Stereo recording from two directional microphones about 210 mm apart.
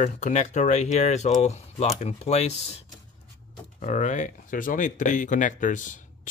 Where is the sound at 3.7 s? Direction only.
35° left (ahead or behind).